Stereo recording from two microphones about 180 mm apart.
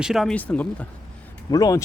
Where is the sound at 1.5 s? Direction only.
20° left (ahead or behind).